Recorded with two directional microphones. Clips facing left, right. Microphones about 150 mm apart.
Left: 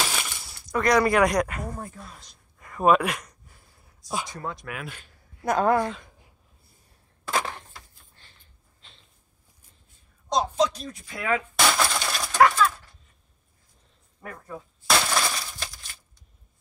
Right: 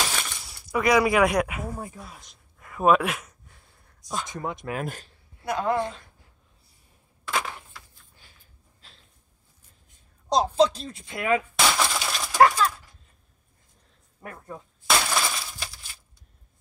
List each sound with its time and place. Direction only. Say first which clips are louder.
0.1 s coin: even; 5° left (ahead or behind)
4.3 s speech: right 2 dB; 20° right (ahead or behind)
4.6 s speech: right 6 dB; 40° right (ahead or behind)
5.4 s a woman's voice: left 4 dB; 45° left (ahead or behind)
7.2 s a sound: left 2 dB; 35° left (ahead or behind)
8.2 s snort: right 1 dB; 5° right (ahead or behind)
10.3 s speech: right 3 dB; 30° right (ahead or behind)
11.5 s glass: left 1 dB; centre (ahead or behind)
12.4 s a sound: even; 35° right (ahead or behind)
14.9 s glass: left 1 dB; centre (ahead or behind)